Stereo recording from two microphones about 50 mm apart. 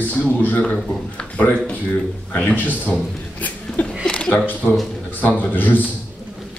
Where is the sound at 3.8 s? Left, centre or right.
Left.